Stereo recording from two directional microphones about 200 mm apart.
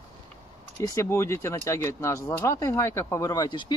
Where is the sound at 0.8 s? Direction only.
15° left (ahead or behind).